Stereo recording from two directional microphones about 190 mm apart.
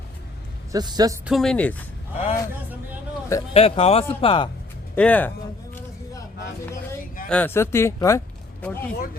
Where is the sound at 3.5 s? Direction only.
30° left (ahead or behind).